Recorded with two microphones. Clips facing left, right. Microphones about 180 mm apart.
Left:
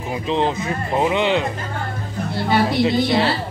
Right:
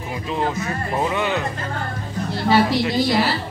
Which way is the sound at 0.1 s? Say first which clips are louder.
Left 4 dB; 25° left (ahead or behind).